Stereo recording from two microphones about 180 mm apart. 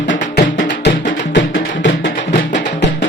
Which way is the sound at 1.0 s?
85° left.